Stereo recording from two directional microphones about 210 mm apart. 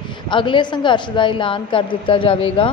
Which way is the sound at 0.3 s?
25° left (ahead or behind).